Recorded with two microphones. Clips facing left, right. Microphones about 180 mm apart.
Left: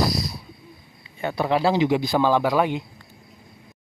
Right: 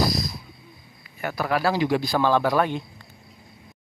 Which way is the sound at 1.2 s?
25° left (ahead or behind).